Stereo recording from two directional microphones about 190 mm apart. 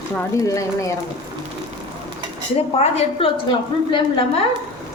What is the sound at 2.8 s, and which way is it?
A woman's voice, 35° left (ahead or behind).